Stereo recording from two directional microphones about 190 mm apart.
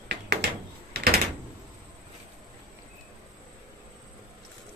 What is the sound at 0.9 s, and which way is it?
Door, 55° right (ahead or behind).